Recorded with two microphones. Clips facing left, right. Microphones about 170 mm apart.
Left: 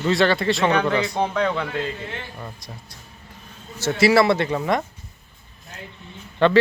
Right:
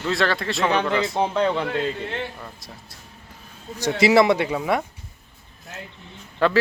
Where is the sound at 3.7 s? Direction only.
15° right (ahead or behind).